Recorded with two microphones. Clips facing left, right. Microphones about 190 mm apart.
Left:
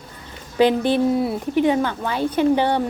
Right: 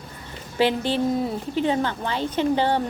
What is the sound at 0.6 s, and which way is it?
Speech, 15° left (ahead or behind).